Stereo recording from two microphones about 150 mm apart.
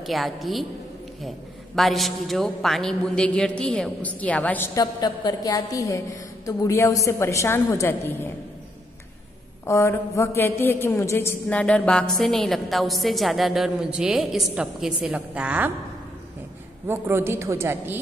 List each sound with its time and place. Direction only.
0.0 s a woman's voice: centre (ahead or behind)
1.8 s a woman's voice: centre (ahead or behind)
4.7 s a woman's voice: 25° left (ahead or behind)
9.7 s a woman's voice: 20° left (ahead or behind); by 15.7 s 10° right (ahead or behind)
16.8 s a woman's voice: 15° right (ahead or behind)